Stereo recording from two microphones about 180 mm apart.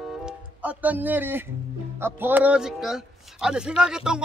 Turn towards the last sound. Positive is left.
turn(degrees=-5)  # may be behind; listen again after turning